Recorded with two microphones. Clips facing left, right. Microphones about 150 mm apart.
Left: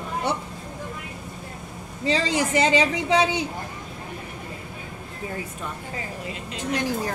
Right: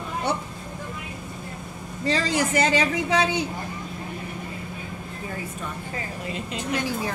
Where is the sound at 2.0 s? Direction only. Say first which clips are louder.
Left 1 dB; 20° left (ahead or behind).